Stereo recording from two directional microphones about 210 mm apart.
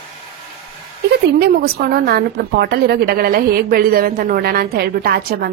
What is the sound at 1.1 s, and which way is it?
A woman's voice, 50° right (ahead or behind).